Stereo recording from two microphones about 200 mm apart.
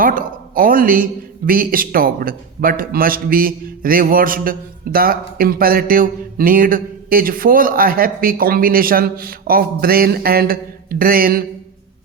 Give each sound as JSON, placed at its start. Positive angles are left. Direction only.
{"t": 0.0, "sound": "a man's voice", "side_deg": -45}